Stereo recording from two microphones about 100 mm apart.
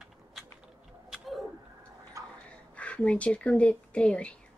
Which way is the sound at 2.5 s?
15° left (ahead or behind).